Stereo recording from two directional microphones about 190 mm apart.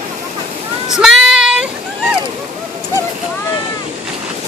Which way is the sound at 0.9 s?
5° right (ahead or behind).